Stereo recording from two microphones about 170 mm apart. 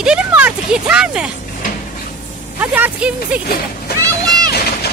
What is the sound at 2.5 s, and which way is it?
Speech, 10° right (ahead or behind).